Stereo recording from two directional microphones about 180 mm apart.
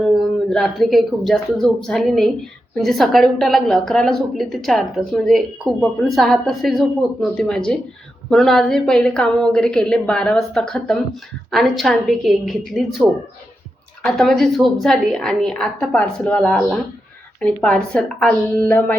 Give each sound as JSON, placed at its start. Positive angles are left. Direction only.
{"t": 0.1, "sound": "a woman's voice", "side_deg": 0}